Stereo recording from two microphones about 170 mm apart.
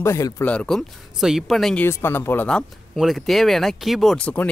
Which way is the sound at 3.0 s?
Centre (ahead or behind).